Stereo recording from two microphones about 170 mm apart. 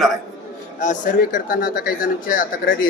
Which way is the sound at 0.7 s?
50° left (ahead or behind).